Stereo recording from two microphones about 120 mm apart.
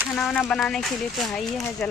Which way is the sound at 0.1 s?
10° left (ahead or behind).